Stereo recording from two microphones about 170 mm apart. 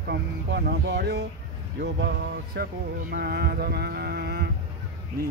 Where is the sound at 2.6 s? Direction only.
85° right.